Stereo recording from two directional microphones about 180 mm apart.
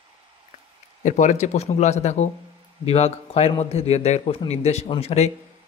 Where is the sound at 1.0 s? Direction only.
40° left (ahead or behind).